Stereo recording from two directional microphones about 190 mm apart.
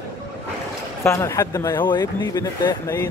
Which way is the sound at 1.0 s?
15° left (ahead or behind).